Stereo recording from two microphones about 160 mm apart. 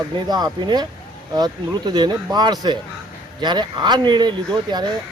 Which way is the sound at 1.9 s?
25° right (ahead or behind).